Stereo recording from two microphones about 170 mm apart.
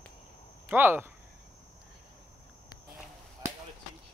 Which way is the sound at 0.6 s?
10° right (ahead or behind).